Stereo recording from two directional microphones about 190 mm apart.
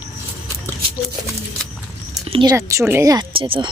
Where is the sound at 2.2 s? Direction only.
25° right (ahead or behind).